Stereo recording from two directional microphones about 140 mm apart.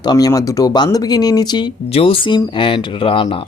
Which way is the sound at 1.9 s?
40° left (ahead or behind).